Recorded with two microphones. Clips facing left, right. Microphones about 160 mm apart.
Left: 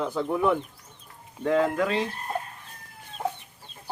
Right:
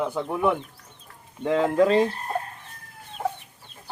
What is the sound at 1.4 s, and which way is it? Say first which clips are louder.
Speech: right 3 dB; 25° right (ahead or behind).